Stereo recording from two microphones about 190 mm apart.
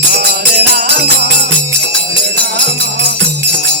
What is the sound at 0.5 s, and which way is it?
Music, 55° right (ahead or behind).